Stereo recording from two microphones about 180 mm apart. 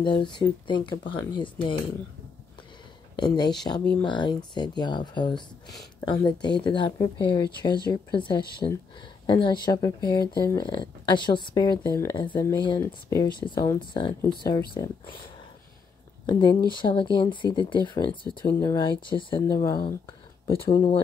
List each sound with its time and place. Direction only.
0.0 s speech: 25° left (ahead or behind)
3.2 s speech: 25° left (ahead or behind)
16.3 s speech: 25° left (ahead or behind)